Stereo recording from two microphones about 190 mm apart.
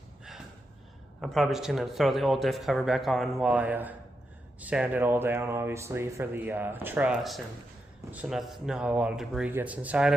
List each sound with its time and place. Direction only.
1.2 s speech: centre (ahead or behind)